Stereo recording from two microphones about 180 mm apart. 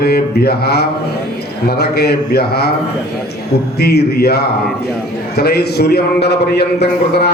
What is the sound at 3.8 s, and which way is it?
A man's voice, 60° left (ahead or behind).